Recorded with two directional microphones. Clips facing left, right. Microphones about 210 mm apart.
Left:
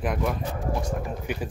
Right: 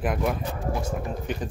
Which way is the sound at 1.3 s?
10° left (ahead or behind).